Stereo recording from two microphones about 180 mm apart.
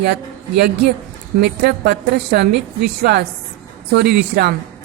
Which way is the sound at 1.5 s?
60° right (ahead or behind).